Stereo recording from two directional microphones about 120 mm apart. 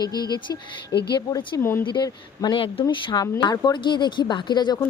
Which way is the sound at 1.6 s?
20° left (ahead or behind).